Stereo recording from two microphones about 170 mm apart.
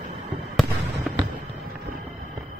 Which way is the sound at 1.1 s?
5° right (ahead or behind).